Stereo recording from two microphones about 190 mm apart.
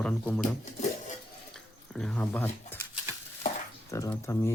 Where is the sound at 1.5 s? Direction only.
Centre (ahead or behind).